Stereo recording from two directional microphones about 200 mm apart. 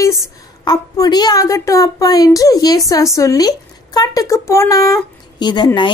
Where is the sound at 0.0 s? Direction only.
15° left (ahead or behind).